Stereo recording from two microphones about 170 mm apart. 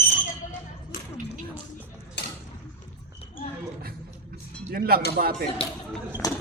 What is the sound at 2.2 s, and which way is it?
Mechanisms, 85° left.